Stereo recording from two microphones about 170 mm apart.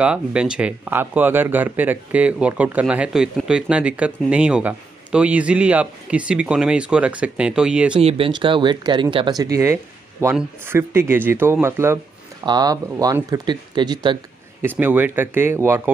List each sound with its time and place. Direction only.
0.0 s speech: 5° right (ahead or behind)
8.0 s speech: 35° right (ahead or behind)
14.6 s speech: 10° right (ahead or behind)